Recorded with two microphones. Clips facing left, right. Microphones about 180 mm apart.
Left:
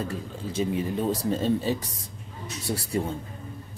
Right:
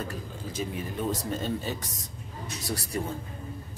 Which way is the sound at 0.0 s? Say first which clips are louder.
Left 4 dB; 30° left (ahead or behind).